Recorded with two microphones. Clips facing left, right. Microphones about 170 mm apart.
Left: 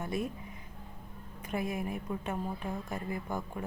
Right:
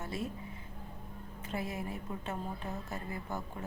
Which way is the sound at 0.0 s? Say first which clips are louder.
Left 4 dB; 15° left (ahead or behind).